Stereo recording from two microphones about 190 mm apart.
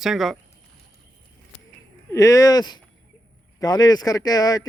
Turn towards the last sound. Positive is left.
turn(degrees=20)  # may be behind; listen again after turning